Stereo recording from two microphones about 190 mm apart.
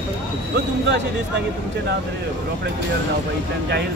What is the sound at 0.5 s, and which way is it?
Speech, 65° right (ahead or behind).